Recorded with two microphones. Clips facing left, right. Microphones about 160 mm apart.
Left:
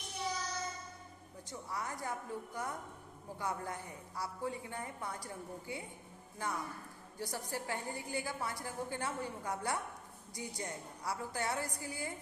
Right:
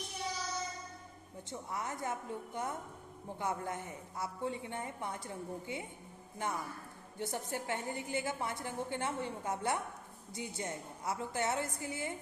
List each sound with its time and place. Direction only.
1.5 s a woman's voice: 20° right (ahead or behind)